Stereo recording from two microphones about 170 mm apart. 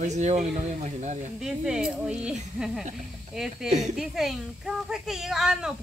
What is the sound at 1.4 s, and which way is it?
Speech, 5° right (ahead or behind).